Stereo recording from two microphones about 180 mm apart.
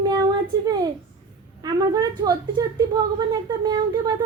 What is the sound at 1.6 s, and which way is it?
A woman's voice, 20° right (ahead or behind).